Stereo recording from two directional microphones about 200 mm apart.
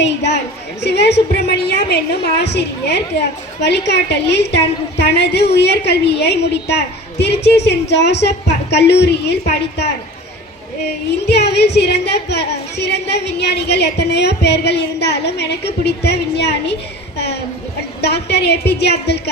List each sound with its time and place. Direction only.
0.0 s speech: 60° left (ahead or behind)
11.3 s speech: 55° left (ahead or behind)
18.0 s speech: 55° left (ahead or behind)